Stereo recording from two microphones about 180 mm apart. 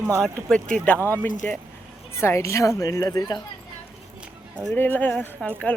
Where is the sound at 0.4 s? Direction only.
5° left (ahead or behind); by 3.4 s 20° left (ahead or behind).